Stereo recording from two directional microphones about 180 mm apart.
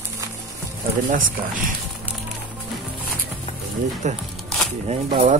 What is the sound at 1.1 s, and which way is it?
Speech, 50° right (ahead or behind).